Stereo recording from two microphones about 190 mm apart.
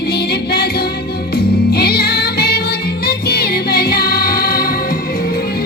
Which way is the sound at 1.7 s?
55° left (ahead or behind).